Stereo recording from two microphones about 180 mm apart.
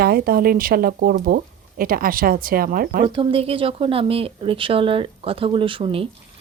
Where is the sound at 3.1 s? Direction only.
30° right (ahead or behind).